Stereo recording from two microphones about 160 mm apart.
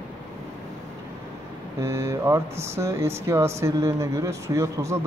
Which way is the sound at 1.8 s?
15° right (ahead or behind).